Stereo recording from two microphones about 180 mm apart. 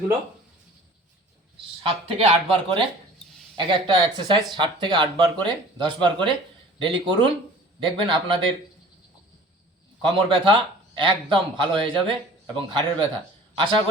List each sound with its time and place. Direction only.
1.8 s speech: 30° right (ahead or behind)
10.0 s speech: 30° right (ahead or behind)